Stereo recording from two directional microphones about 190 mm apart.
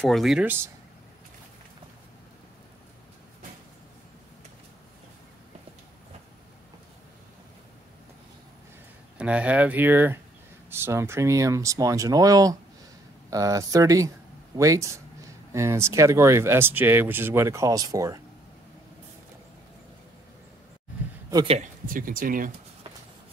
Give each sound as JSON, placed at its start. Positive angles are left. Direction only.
{"t": 0.0, "sound": "speech", "side_deg": 0}
{"t": 9.2, "sound": "speech", "side_deg": -5}
{"t": 21.5, "sound": "speech", "side_deg": -40}